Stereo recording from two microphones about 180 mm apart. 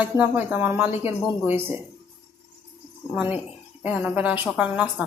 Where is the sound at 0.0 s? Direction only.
10° right (ahead or behind).